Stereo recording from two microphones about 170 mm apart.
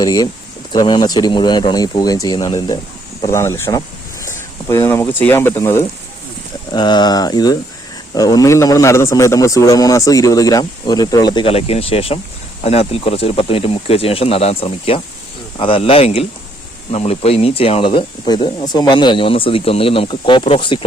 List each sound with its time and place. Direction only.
0.0 s a man's voice: 20° left (ahead or behind)
6.7 s a man's voice: 25° left (ahead or behind)